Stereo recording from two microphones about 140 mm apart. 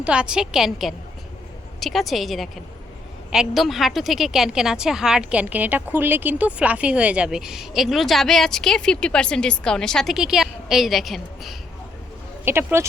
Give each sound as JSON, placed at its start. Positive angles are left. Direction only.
{"t": 0.0, "sound": "a woman's voice", "side_deg": -5}
{"t": 12.5, "sound": "speech", "side_deg": -20}